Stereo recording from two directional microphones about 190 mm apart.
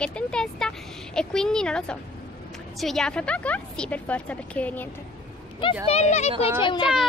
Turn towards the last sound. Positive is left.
turn(degrees=25)  # may be behind; listen again after turning